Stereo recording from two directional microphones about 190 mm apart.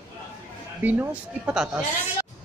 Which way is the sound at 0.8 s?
10° right (ahead or behind).